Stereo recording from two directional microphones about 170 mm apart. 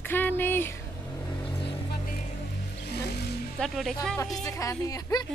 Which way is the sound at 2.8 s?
75° left (ahead or behind).